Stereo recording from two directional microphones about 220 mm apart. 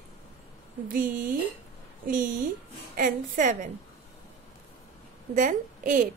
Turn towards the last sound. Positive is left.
turn(degrees=-35)  # may be behind; listen again after turning